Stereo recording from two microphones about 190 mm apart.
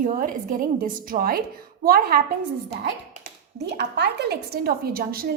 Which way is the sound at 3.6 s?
60° right (ahead or behind).